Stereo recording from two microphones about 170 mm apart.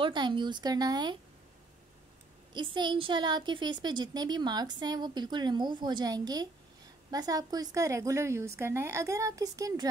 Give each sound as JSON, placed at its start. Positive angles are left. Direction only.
{"t": 0.0, "sound": "a woman's voice", "side_deg": -25}
{"t": 2.5, "sound": "a woman's voice", "side_deg": -25}